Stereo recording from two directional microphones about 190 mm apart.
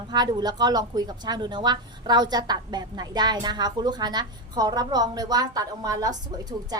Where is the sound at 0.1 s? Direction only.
20° right (ahead or behind).